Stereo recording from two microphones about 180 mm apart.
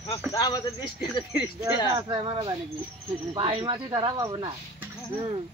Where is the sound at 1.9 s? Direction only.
25° right (ahead or behind).